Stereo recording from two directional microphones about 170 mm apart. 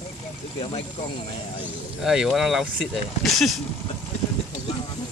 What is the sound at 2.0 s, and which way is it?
Speech, centre (ahead or behind).